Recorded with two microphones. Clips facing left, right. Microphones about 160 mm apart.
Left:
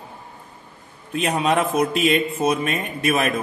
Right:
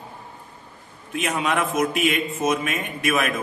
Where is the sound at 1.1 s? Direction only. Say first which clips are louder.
Left 4 dB; 35° left (ahead or behind).